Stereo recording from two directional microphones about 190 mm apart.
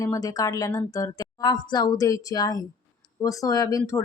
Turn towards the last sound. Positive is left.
turn(degrees=15)  # may be behind; listen again after turning